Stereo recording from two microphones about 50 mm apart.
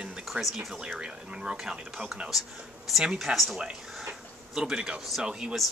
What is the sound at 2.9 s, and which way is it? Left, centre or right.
Speech, centre.